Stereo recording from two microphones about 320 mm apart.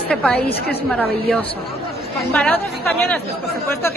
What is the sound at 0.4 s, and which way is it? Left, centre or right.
Speech, left.